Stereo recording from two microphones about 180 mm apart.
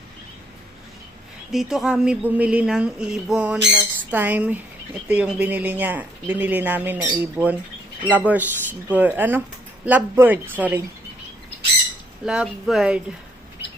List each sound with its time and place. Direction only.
1.5 s speech: centre (ahead or behind)
12.2 s speech: 5° right (ahead or behind)